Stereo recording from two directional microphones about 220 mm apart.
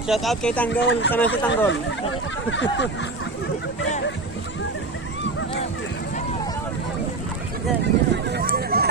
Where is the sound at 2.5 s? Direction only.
55° left (ahead or behind).